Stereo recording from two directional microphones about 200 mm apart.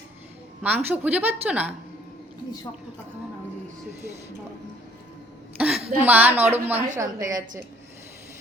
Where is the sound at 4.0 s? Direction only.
35° right (ahead or behind).